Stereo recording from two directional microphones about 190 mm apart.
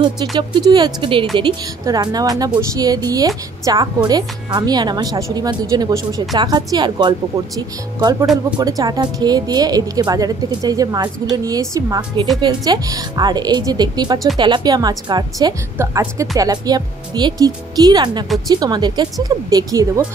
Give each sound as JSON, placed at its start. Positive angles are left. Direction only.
{"t": 0.4, "sound": "a woman's voice", "side_deg": -20}